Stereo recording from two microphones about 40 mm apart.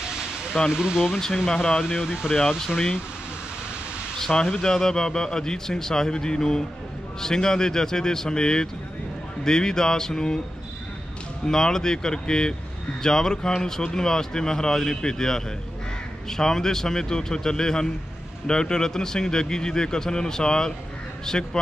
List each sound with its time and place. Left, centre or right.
0.7 s speech: centre
1.1 s speech: centre
1.8 s speech: centre
4.2 s speech: centre
11.4 s a man's voice: centre